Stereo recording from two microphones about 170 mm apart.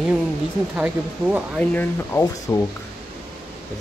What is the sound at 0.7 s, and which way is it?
Speech, 5° right (ahead or behind).